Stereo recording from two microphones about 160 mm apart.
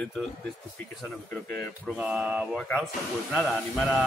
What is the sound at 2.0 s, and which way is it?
Speech, 5° right (ahead or behind).